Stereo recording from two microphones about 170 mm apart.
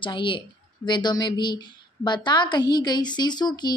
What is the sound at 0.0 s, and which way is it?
A woman's voice, 30° left (ahead or behind).